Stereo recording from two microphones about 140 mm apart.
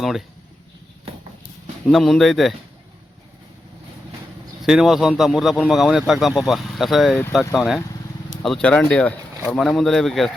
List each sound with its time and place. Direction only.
0.0 s speech: centre (ahead or behind)
1.9 s speech: centre (ahead or behind)
4.6 s speech: 5° right (ahead or behind)